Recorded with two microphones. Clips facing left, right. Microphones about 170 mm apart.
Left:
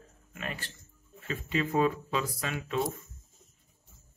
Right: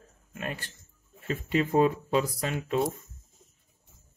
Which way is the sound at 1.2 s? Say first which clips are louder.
Right 4 dB; 40° right (ahead or behind).